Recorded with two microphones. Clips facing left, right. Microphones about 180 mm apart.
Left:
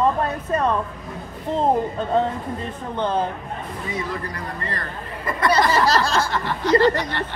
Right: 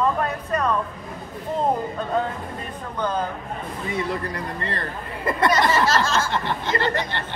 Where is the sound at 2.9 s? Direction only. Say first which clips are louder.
Left 3 dB; 30° left (ahead or behind).